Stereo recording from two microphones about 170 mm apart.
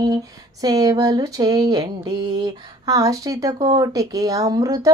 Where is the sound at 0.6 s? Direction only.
20° right (ahead or behind).